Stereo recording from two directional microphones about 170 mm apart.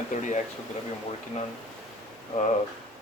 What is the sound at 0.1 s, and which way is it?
Speech, 45° left (ahead or behind).